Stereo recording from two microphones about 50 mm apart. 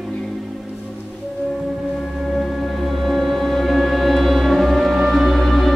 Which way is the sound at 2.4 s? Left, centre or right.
Centre.